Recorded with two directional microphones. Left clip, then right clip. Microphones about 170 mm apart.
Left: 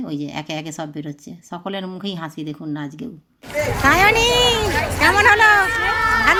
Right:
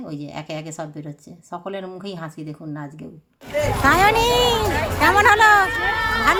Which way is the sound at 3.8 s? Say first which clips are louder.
Left 2 dB; 5° left (ahead or behind).